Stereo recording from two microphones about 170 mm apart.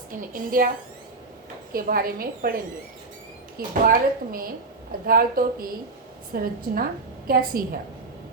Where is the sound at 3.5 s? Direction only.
60° right (ahead or behind).